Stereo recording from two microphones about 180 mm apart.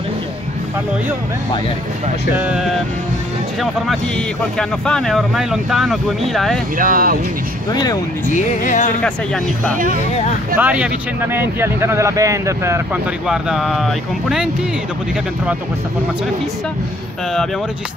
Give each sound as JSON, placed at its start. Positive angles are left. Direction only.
{"t": 2.3, "sound": "speech", "side_deg": -5}
{"t": 4.6, "sound": "speech", "side_deg": 5}
{"t": 6.8, "sound": "speech", "side_deg": -50}
{"t": 7.7, "sound": "speech", "side_deg": 20}
{"t": 8.3, "sound": "speech", "side_deg": 45}
{"t": 9.0, "sound": "speech", "side_deg": 5}
{"t": 10.6, "sound": "speech", "side_deg": -10}
{"t": 13.3, "sound": "speech", "side_deg": 0}